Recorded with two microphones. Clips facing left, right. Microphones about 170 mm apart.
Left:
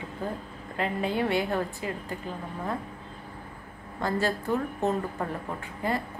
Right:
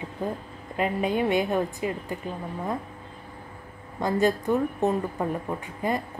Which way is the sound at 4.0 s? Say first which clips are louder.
Right 5 dB; 15° right (ahead or behind).